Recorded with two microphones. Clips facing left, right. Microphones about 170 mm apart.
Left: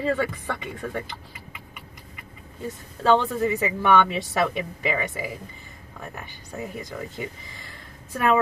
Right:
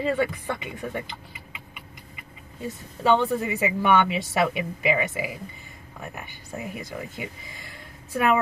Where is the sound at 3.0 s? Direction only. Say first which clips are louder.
Left 1 dB; 15° right (ahead or behind).